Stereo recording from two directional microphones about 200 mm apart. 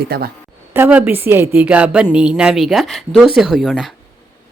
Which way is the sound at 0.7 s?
10° right (ahead or behind).